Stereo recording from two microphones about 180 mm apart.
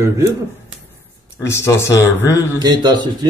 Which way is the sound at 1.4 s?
15° left (ahead or behind).